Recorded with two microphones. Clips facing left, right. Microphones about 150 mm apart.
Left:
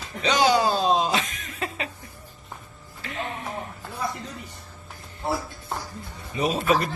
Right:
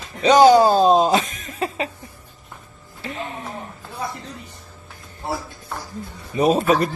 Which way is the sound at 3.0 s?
30° right (ahead or behind).